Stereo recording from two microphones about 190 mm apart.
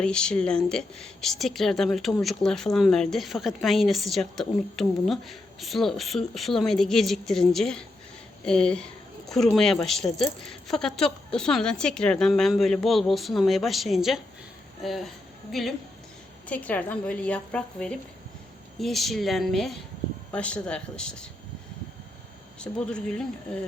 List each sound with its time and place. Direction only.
0.0 s a woman's voice: 5° left (ahead or behind)
22.6 s speech: 5° left (ahead or behind)